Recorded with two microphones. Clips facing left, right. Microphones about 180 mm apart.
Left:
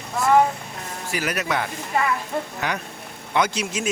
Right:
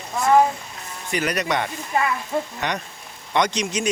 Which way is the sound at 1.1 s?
5° left (ahead or behind).